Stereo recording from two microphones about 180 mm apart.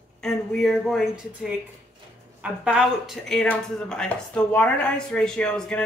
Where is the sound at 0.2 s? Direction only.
5° left (ahead or behind).